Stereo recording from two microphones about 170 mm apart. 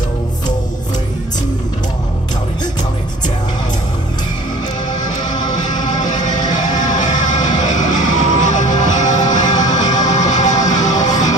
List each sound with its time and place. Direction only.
5.3 s music: 25° left (ahead or behind)
5.6 s music: 45° left (ahead or behind)
9.2 s music: 25° left (ahead or behind)
10.1 s music: 45° left (ahead or behind)
10.5 s music: 20° left (ahead or behind)